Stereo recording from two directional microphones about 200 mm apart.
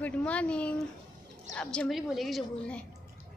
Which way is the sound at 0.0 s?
5° left (ahead or behind).